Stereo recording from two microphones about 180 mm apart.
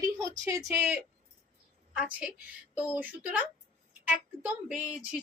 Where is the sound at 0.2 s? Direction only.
20° right (ahead or behind).